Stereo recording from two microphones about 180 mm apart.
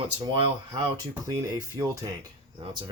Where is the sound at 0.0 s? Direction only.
30° right (ahead or behind).